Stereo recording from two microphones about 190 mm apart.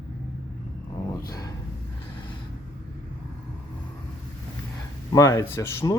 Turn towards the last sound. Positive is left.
turn(degrees=15)  # may be behind; listen again after turning